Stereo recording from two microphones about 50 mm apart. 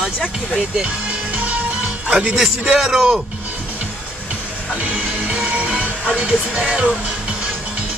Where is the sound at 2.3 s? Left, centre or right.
Centre.